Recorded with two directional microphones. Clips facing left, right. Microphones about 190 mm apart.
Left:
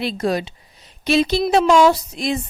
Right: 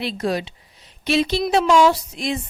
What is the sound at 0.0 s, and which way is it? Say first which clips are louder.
A woman's voice: left 2 dB; 45° left (ahead or behind).